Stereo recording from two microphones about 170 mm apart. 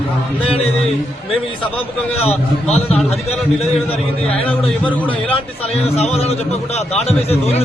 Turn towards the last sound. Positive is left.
turn(degrees=40)  # may be behind; listen again after turning